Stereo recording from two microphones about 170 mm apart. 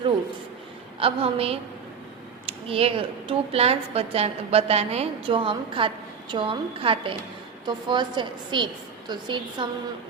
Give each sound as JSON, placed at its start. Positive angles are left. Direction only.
{"t": 0.9, "sound": "a woman's voice", "side_deg": -35}